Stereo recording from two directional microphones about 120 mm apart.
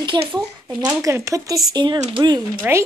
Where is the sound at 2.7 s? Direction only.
15° right (ahead or behind).